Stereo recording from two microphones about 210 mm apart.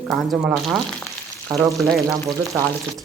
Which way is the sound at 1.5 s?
15° right (ahead or behind).